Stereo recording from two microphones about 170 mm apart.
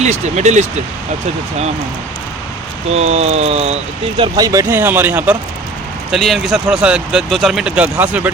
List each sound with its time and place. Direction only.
0.0 s speech: 40° right (ahead or behind)
2.9 s speech: 40° right (ahead or behind)
4.2 s speech: 20° right (ahead or behind)